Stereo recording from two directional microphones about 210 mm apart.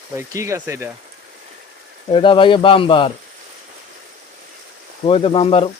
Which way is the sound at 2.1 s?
25° left (ahead or behind).